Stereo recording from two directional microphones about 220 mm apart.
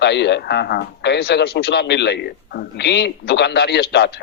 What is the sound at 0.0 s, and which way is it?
A man's voice, 50° left (ahead or behind).